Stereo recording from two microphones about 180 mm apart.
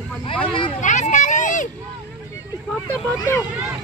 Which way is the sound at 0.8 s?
40° left (ahead or behind).